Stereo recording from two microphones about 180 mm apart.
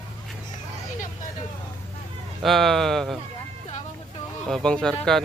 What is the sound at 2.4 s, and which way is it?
Speech, centre (ahead or behind).